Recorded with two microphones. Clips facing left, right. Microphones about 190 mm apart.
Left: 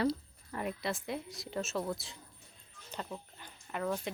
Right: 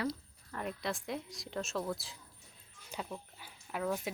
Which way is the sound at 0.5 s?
5° left (ahead or behind).